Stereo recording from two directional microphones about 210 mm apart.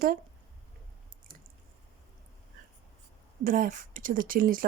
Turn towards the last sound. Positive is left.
turn(degrees=-40)  # may be behind; listen again after turning